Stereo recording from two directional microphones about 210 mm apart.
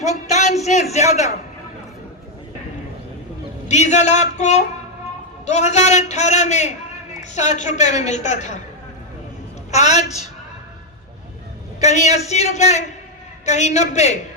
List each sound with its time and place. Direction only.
0.0 s a man's voice: 35° left (ahead or behind)
3.7 s a man's voice: 35° left (ahead or behind)
9.7 s a man's voice: 35° left (ahead or behind)
11.8 s a man's voice: 35° left (ahead or behind)